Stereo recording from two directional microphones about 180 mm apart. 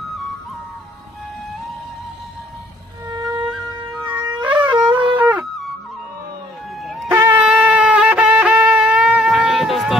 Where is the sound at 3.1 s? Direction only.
20° right (ahead or behind).